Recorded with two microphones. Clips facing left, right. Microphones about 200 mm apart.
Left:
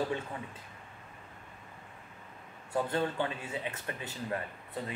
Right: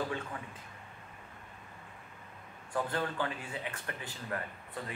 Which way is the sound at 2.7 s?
25° left (ahead or behind).